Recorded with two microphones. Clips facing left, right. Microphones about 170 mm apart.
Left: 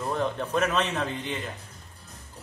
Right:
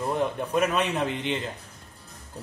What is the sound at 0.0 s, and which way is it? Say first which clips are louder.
Speech: right 2 dB; 15° right (ahead or behind).